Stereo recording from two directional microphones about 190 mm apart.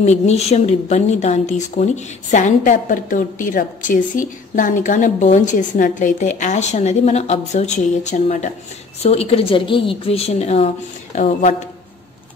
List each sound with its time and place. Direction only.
0.0 s speech: 35° left (ahead or behind)